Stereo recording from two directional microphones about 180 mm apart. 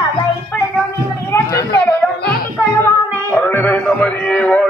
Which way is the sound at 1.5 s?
65° left (ahead or behind).